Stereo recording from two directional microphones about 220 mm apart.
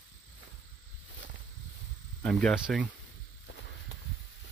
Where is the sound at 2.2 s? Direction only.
Centre (ahead or behind).